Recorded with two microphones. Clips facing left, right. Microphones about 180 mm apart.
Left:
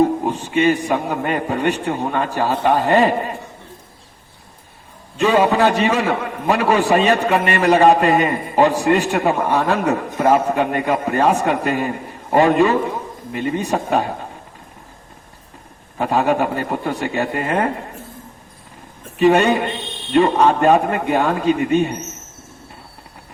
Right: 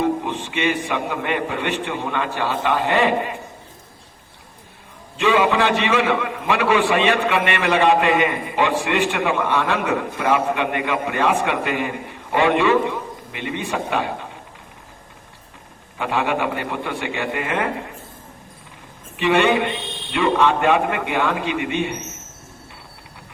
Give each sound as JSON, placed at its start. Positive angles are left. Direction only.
{"t": 0.0, "sound": "a man's voice", "side_deg": 40}
{"t": 5.1, "sound": "a man's voice", "side_deg": 40}
{"t": 16.0, "sound": "a man's voice", "side_deg": 40}
{"t": 19.1, "sound": "a man's voice", "side_deg": 40}